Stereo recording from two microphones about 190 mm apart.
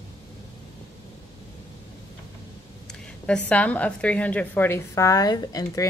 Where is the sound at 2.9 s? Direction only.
5° left (ahead or behind).